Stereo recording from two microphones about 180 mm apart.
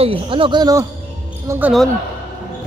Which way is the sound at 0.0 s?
30° right (ahead or behind).